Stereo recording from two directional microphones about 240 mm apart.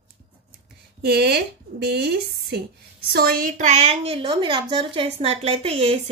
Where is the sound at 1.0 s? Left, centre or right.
Right.